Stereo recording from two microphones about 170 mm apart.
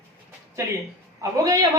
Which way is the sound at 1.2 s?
20° right (ahead or behind).